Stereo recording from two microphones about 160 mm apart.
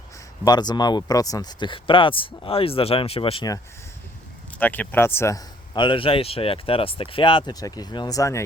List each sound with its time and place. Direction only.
0.4 s speech: 25° left (ahead or behind)
4.6 s speech: 10° left (ahead or behind)
5.7 s speech: 30° left (ahead or behind)